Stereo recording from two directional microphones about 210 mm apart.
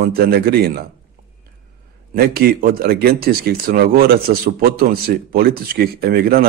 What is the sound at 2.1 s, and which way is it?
Speech, 45° right (ahead or behind).